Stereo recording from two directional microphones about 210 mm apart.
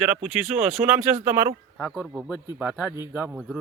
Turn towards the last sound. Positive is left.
turn(degrees=-5)  # may be behind; listen again after turning